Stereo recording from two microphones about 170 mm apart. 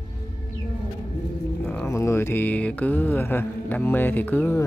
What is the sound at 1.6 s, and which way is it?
Speech, 10° left (ahead or behind).